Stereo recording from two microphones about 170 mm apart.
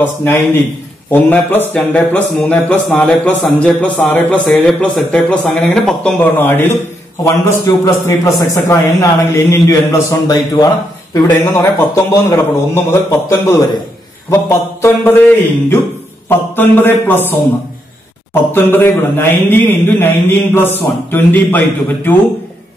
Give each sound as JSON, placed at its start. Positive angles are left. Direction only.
{"t": 0.0, "sound": "a man's voice", "side_deg": 15}
{"t": 18.3, "sound": "speech", "side_deg": 10}